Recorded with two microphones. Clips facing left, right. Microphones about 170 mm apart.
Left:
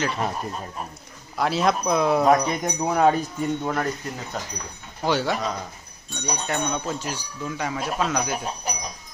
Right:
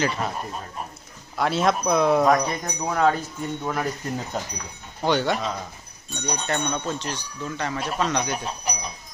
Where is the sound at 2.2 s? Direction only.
25° left (ahead or behind).